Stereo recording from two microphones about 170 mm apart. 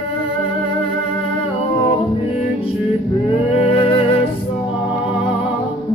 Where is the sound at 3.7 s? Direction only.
35° left (ahead or behind).